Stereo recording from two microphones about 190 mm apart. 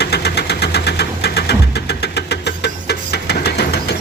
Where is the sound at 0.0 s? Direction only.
60° left (ahead or behind).